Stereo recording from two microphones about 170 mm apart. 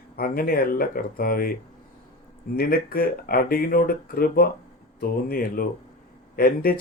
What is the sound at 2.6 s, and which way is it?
Speech, 60° left (ahead or behind).